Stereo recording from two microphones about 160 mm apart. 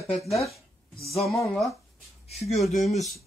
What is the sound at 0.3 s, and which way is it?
Speech, centre (ahead or behind).